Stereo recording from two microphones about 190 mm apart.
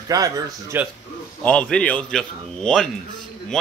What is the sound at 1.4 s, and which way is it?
Speech, 5° left (ahead or behind).